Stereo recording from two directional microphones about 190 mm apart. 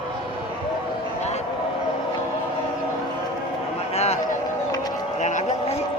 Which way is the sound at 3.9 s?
35° left (ahead or behind).